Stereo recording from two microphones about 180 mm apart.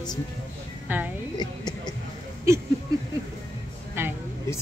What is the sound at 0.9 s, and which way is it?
Speech, 10° right (ahead or behind).